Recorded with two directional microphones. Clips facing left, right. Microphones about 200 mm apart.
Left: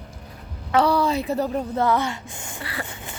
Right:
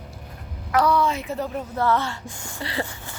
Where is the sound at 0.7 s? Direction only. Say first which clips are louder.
Left 1 dB; 30° left (ahead or behind).